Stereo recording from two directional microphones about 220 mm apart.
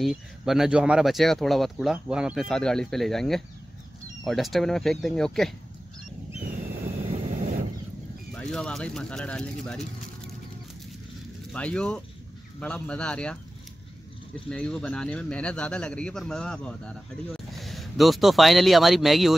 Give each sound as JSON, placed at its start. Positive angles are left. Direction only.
{"t": 0.0, "sound": "a man's voice", "side_deg": 0}
{"t": 7.1, "sound": "vehicle", "side_deg": -30}
{"t": 8.4, "sound": "a man's voice", "side_deg": 5}
{"t": 11.5, "sound": "a man's voice", "side_deg": 5}
{"t": 14.5, "sound": "a man's voice", "side_deg": 5}